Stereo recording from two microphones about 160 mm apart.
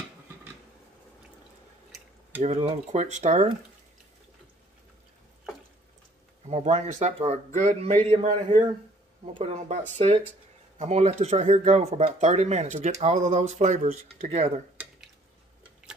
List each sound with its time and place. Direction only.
2.4 s speech: 45° right (ahead or behind)
6.4 s speech: 45° right (ahead or behind)